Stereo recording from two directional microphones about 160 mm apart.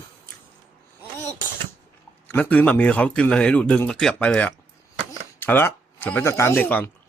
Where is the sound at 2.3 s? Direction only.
10° left (ahead or behind).